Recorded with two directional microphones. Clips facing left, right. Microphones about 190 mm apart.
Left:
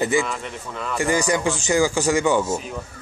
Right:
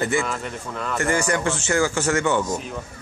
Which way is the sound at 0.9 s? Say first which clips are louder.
Left 2 dB; 15° left (ahead or behind).